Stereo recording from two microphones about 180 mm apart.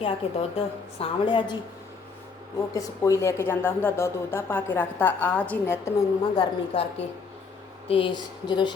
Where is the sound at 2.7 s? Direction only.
20° left (ahead or behind).